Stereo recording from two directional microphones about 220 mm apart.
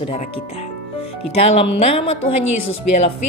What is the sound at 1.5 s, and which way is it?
Speech, 25° left (ahead or behind).